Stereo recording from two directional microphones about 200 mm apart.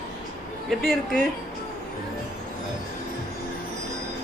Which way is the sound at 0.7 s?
Centre (ahead or behind).